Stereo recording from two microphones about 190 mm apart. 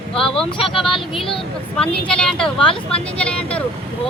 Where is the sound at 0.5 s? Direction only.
25° left (ahead or behind).